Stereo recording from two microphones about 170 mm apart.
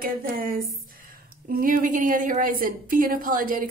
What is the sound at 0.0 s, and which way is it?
A woman's voice, 55° right (ahead or behind).